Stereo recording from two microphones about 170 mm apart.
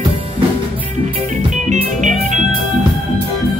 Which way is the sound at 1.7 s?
45° right (ahead or behind).